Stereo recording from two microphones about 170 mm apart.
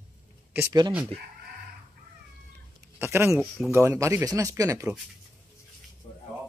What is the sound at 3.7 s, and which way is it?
Speech, 15° right (ahead or behind).